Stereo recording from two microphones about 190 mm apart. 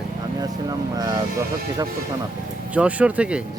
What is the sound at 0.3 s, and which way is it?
Speech, 20° right (ahead or behind).